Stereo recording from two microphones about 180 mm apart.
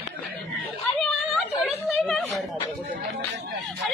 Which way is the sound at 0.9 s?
5° left (ahead or behind).